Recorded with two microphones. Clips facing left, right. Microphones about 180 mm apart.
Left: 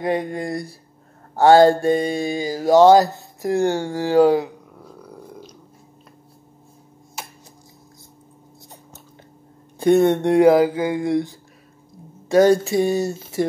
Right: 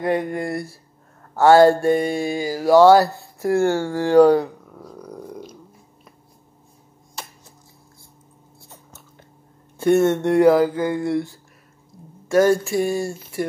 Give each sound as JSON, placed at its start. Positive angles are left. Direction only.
{"t": 0.0, "sound": "speech", "side_deg": 15}
{"t": 1.4, "sound": "mantra", "side_deg": 20}
{"t": 9.8, "sound": "speech", "side_deg": 15}
{"t": 12.3, "sound": "mantra", "side_deg": 20}